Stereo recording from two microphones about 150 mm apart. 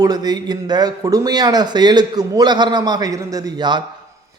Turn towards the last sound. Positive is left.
turn(degrees=-30)  # may be behind; listen again after turning